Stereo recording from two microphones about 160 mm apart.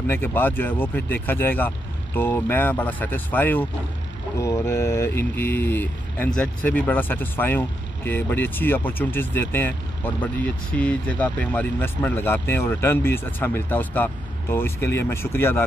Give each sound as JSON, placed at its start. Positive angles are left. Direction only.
{"t": 0.0, "sound": "speech", "side_deg": 10}